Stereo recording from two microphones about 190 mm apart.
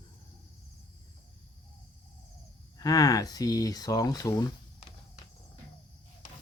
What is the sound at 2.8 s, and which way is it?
Speech, 20° left (ahead or behind).